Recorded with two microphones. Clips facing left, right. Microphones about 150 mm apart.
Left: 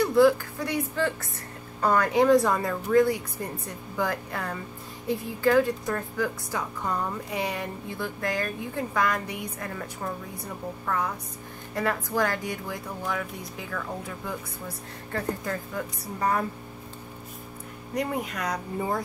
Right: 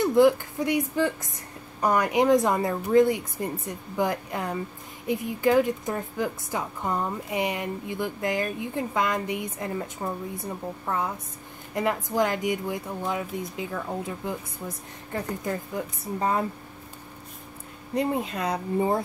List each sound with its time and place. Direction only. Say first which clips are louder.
0.0 s a woman's voice: right 1 dB; 20° right (ahead or behind)
17.9 s a woman's voice: right 3 dB; 25° right (ahead or behind)